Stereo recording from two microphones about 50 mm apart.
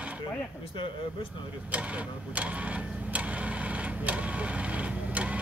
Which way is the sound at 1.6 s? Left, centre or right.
Right.